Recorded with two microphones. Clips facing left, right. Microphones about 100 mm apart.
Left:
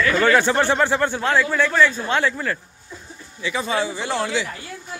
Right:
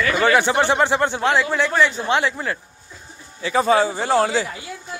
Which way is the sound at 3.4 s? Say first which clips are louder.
Right 6 dB; 40° right (ahead or behind).